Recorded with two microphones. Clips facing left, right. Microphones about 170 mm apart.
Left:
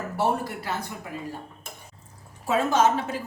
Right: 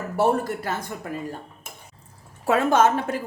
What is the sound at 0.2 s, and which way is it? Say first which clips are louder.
Speech: right 5 dB; 50° right (ahead or behind).